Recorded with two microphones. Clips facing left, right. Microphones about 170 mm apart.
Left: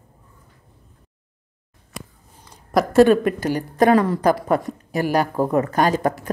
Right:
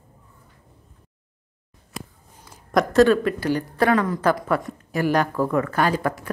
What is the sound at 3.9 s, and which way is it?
Speech, 30° left (ahead or behind).